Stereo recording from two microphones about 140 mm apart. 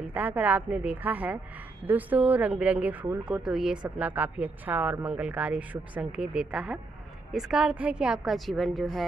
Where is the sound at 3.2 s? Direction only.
5° right (ahead or behind).